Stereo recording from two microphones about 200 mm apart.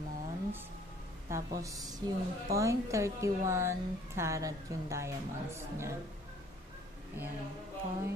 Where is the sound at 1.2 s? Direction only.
15° right (ahead or behind).